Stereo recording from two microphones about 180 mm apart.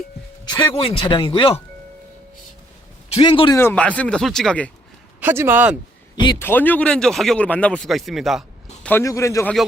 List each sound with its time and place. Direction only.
0.4 s speech: 25° left (ahead or behind)
3.2 s speech: 30° left (ahead or behind)
3.6 s speech: 10° left (ahead or behind)
5.2 s speech: 10° right (ahead or behind)
6.4 s speech: 10° left (ahead or behind)
8.8 s speech: 10° left (ahead or behind)